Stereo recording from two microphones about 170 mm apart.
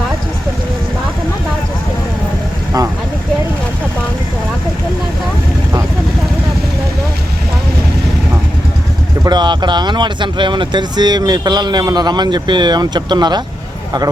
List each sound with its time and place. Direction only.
9.2 s speech: 25° right (ahead or behind)